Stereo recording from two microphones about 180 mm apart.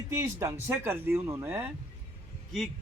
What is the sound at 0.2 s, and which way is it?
Speech, 15° right (ahead or behind).